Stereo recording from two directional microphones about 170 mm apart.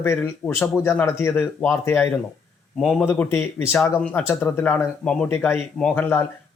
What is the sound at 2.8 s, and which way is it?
A man's voice, centre (ahead or behind).